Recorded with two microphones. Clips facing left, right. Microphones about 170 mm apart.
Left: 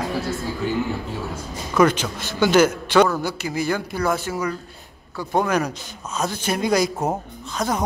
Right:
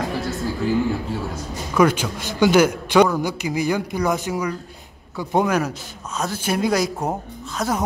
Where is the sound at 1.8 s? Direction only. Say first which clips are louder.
Even; 10° right (ahead or behind).